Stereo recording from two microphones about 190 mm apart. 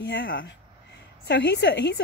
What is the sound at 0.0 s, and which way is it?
A woman's voice, 65° left (ahead or behind).